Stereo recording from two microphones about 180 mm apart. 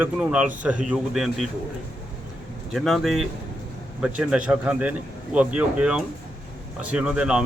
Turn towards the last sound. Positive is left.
turn(degrees=-5)  # may be behind; listen again after turning